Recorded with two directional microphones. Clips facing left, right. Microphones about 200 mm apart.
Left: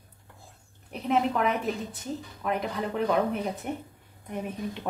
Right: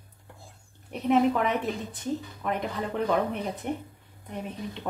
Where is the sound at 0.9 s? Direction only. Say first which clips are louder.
Right 3 dB; centre (ahead or behind).